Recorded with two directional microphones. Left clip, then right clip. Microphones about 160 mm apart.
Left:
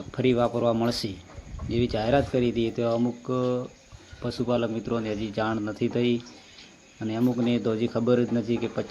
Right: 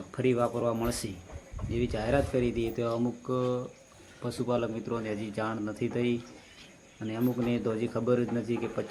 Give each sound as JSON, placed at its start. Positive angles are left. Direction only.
{"t": 0.1, "sound": "a man's voice", "side_deg": 25}